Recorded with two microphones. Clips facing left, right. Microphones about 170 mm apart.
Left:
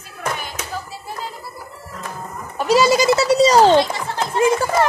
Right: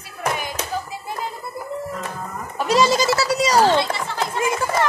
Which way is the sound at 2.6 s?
5° left (ahead or behind).